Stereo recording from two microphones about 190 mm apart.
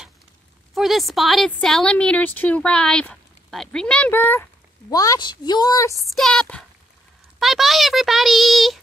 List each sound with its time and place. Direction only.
0.7 s a woman's voice: centre (ahead or behind); by 5.9 s 20° left (ahead or behind)
6.1 s a woman's voice: centre (ahead or behind)